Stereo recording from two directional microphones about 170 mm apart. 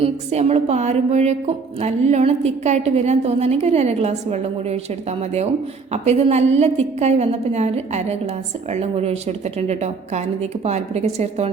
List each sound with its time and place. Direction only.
0.0 s a woman's voice: 40° right (ahead or behind)
5.9 s a woman's voice: 40° right (ahead or behind)